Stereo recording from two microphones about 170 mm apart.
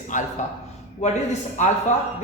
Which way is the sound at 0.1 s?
50° left (ahead or behind).